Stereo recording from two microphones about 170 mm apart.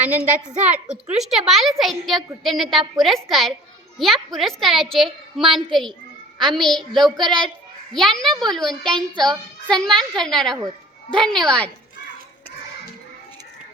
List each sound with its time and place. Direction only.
0.0 s a woman's voice: 10° right (ahead or behind)
7.2 s a child's voice: 25° right (ahead or behind)
7.9 s a woman's voice: 5° left (ahead or behind)